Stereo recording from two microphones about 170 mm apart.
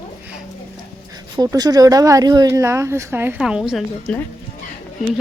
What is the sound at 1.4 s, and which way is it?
A woman's voice, 25° right (ahead or behind).